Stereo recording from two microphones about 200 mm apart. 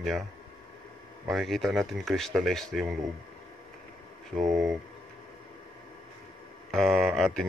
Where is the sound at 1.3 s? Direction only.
Centre (ahead or behind).